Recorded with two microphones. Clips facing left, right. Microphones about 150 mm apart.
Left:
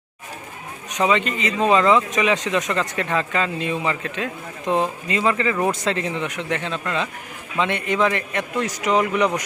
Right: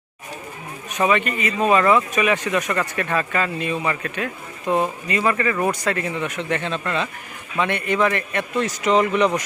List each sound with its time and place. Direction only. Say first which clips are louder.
0.9 s a man's voice: even; 15° left (ahead or behind)